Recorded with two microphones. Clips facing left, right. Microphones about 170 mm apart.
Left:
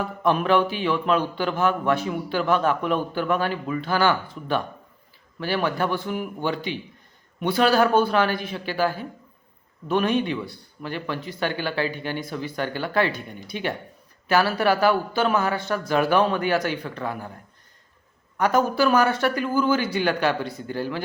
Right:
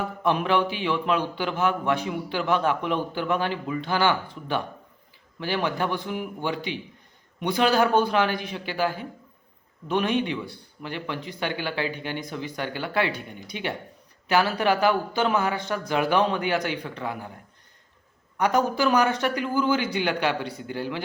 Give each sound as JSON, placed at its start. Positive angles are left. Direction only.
{"t": 0.0, "sound": "speech", "side_deg": -15}
{"t": 18.3, "sound": "speech", "side_deg": -15}